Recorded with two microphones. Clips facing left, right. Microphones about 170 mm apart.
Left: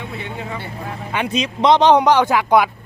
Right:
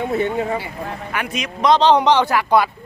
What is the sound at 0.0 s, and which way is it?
Speech, 45° right (ahead or behind).